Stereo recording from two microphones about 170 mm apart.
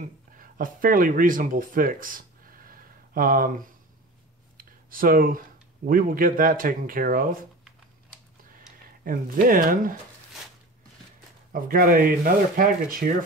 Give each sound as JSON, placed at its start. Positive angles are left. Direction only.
{"t": 0.0, "sound": "speech", "side_deg": -55}
{"t": 4.6, "sound": "a sound", "side_deg": -55}
{"t": 5.9, "sound": "speech", "side_deg": -55}
{"t": 9.0, "sound": "speech", "side_deg": -55}
{"t": 11.5, "sound": "speech", "side_deg": -55}